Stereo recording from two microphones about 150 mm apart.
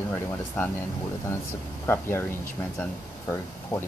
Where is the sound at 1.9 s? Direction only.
15° left (ahead or behind).